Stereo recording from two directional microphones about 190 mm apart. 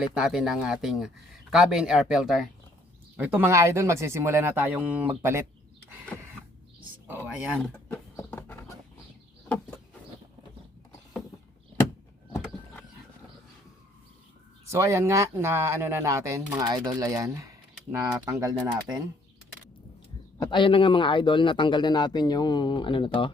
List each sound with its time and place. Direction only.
0.0 s speech: 5° right (ahead or behind)
6.1 s a sound: 10° left (ahead or behind)
7.1 s speech: 10° right (ahead or behind)
7.6 s bird: 10° left (ahead or behind)
14.7 s speech: 15° right (ahead or behind)
20.4 s a man's voice: 25° left (ahead or behind)